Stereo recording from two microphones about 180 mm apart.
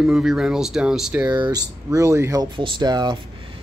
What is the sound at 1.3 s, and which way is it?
Speech, 20° right (ahead or behind).